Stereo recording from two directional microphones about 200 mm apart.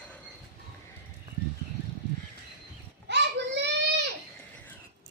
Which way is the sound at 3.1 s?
60° right (ahead or behind).